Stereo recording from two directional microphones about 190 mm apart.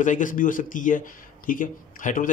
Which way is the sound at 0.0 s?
40° left (ahead or behind).